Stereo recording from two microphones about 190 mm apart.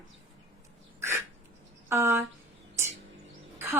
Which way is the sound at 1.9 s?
10° right (ahead or behind).